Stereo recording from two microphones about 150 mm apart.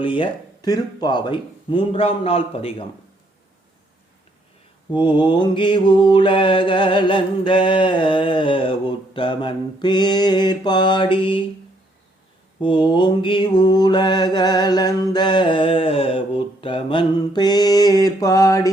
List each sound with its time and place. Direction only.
0.0 s mantra: 35° left (ahead or behind)
4.9 s mantra: 35° left (ahead or behind)
12.6 s mantra: 35° left (ahead or behind)